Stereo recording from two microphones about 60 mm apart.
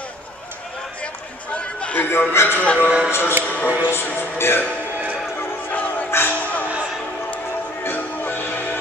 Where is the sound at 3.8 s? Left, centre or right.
Left.